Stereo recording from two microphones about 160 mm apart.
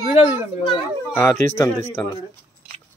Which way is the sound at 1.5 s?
15° left (ahead or behind).